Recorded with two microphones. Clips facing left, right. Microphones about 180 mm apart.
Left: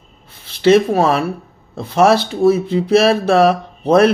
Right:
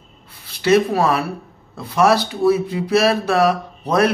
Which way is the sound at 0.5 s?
30° left (ahead or behind).